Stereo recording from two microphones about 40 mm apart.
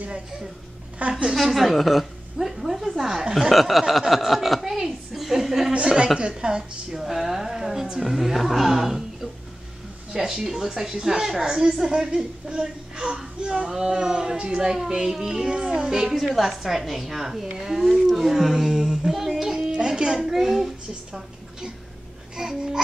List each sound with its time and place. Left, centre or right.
1.0 s a woman's voice: right
1.3 s a woman's voice: centre
5.7 s a sound: right
6.1 s speech: right
7.0 s a woman's voice: centre
16.1 s a woman's voice: centre
19.8 s a sound: centre
20.2 s a child's voice: centre
22.3 s babbling: centre